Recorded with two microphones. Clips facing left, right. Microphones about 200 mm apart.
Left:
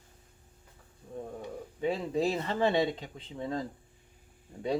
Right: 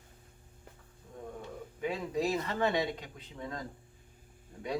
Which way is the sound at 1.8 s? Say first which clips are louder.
Left 3 dB; 30° left (ahead or behind).